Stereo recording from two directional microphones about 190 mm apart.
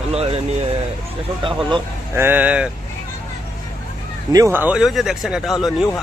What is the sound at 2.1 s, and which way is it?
Speech, 10° right (ahead or behind).